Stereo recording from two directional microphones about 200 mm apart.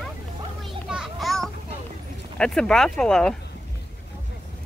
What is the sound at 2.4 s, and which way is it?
Speech, 5° left (ahead or behind).